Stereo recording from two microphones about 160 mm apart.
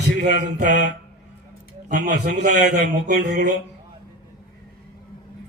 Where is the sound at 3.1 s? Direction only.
55° right (ahead or behind).